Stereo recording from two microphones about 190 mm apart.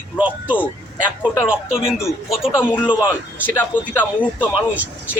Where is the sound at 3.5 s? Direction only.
10° left (ahead or behind).